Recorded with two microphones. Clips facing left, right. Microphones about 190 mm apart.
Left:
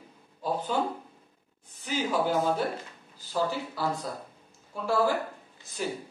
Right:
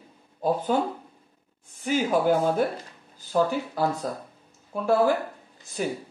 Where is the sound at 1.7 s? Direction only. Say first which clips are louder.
Right 5 dB; 50° right (ahead or behind).